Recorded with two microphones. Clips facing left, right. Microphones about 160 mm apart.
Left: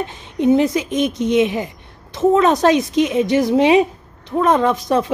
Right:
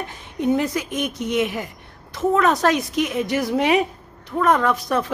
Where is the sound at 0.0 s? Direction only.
20° left (ahead or behind).